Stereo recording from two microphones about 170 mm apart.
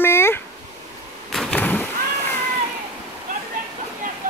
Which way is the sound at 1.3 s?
5° left (ahead or behind).